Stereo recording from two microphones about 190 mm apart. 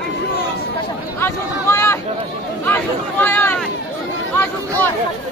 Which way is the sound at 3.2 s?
10° left (ahead or behind).